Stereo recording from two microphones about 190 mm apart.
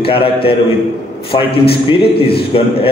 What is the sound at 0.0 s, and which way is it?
Speech, 30° left (ahead or behind).